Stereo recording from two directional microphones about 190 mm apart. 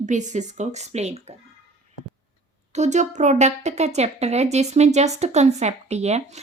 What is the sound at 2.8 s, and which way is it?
A woman's voice, 40° right (ahead or behind).